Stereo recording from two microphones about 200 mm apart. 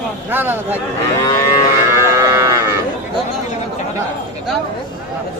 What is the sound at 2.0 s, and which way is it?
Cattle, 15° right (ahead or behind).